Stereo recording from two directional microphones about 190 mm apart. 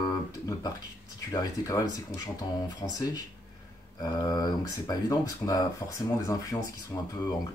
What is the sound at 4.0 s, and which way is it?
Speech, 20° left (ahead or behind).